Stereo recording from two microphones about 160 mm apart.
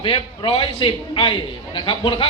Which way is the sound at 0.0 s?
35° left (ahead or behind).